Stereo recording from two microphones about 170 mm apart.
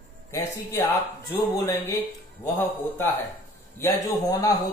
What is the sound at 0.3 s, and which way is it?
Speech, 20° left (ahead or behind).